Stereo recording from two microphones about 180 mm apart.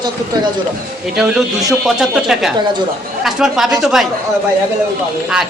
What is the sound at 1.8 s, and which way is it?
A woman's voice, centre (ahead or behind).